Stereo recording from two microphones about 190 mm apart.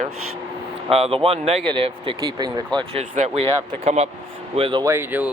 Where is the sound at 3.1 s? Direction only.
40° right (ahead or behind).